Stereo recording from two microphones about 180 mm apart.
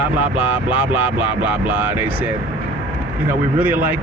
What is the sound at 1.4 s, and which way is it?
Speech, 10° right (ahead or behind).